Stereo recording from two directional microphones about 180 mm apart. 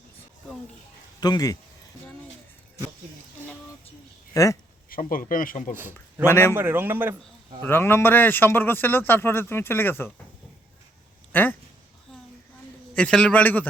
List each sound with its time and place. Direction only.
1.2 s speech: 20° left (ahead or behind)
4.4 s speech: 20° left (ahead or behind)
4.9 s speech: 50° left (ahead or behind)
5.7 s a man's voice: 10° right (ahead or behind)
6.2 s speech: 15° left (ahead or behind)
6.5 s a man's voice: 10° right (ahead or behind)
7.6 s speech: 10° left (ahead or behind)
11.3 s speech: 10° left (ahead or behind)
12.9 s speech: 5° left (ahead or behind)